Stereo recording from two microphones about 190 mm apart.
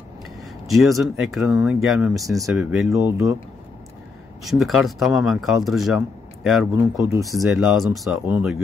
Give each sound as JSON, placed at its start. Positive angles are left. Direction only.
{"t": 0.7, "sound": "speech", "side_deg": 0}
{"t": 4.5, "sound": "speech", "side_deg": 0}
{"t": 6.8, "sound": "speech", "side_deg": -15}
{"t": 7.3, "sound": "speech", "side_deg": 0}